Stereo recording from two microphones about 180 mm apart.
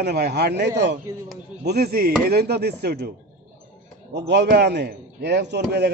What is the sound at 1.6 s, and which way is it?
A man's voice, 60° right (ahead or behind).